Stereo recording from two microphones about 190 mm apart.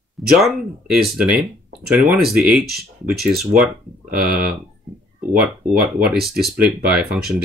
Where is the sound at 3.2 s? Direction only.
55° right (ahead or behind).